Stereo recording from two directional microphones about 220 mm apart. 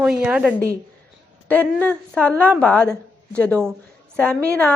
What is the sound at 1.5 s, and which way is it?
A woman's voice, 5° left (ahead or behind).